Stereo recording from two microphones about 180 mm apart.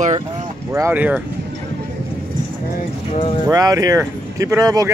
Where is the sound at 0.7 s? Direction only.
10° right (ahead or behind).